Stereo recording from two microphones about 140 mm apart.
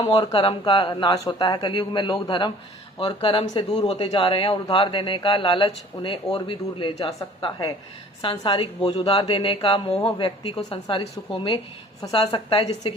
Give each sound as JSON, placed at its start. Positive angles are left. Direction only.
{"t": 0.0, "sound": "a man's voice", "side_deg": 35}
{"t": 8.2, "sound": "a man's voice", "side_deg": 35}